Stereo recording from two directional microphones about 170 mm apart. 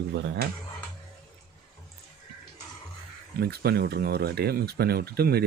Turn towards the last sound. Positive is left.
turn(degrees=-70)  # may be behind; listen again after turning